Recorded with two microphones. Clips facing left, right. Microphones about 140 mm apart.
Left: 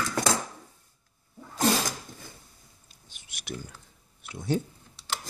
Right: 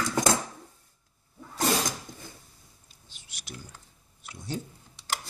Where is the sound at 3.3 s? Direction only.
55° left (ahead or behind).